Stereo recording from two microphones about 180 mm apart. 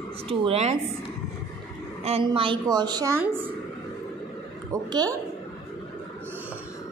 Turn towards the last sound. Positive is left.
turn(degrees=-20)  # may be behind; listen again after turning